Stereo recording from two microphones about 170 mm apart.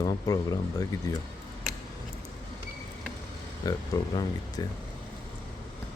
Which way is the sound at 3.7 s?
20° left (ahead or behind).